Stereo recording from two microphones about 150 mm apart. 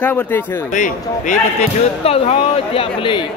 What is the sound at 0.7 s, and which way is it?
Speech, 60° left (ahead or behind).